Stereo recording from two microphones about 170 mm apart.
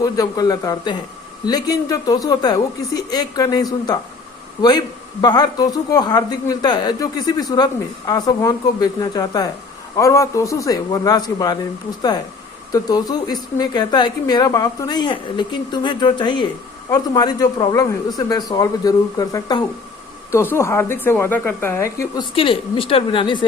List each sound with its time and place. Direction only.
0.0 s speech: 20° left (ahead or behind)
5.2 s speech: 25° left (ahead or behind)
12.7 s a woman's voice: 25° left (ahead or behind)
22.4 s a woman's voice: 30° left (ahead or behind)